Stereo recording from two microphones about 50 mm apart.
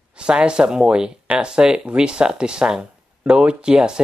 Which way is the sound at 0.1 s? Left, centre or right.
Centre.